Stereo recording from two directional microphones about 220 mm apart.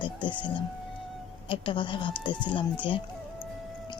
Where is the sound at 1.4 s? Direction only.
25° left (ahead or behind).